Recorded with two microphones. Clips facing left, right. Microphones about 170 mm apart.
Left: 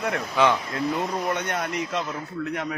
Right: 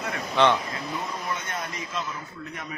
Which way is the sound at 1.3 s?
70° left (ahead or behind).